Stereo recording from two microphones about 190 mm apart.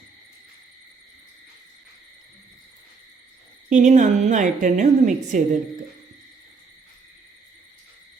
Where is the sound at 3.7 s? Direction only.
40° right (ahead or behind).